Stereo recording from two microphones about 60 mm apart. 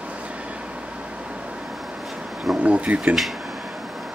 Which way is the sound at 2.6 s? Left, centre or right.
Right.